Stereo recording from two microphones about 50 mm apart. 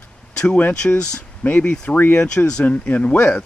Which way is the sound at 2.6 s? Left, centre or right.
Left.